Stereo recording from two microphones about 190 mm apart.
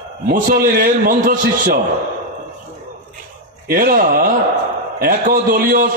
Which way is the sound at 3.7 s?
50° right (ahead or behind).